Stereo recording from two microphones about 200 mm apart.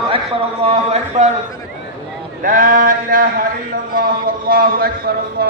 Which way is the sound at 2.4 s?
45° right (ahead or behind).